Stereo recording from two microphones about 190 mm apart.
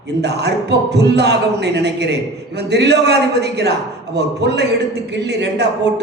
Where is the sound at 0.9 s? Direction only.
60° right (ahead or behind).